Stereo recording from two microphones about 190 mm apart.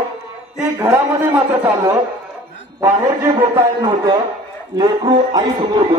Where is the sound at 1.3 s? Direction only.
15° right (ahead or behind).